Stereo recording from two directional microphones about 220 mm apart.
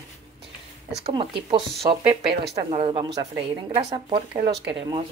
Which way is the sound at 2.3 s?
50° right (ahead or behind).